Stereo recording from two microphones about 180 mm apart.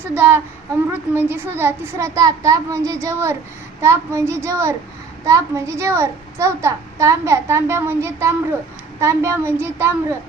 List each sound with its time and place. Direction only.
0.1 s a child's voice: 10° right (ahead or behind)